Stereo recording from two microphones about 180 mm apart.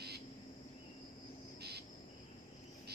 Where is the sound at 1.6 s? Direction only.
65° right (ahead or behind).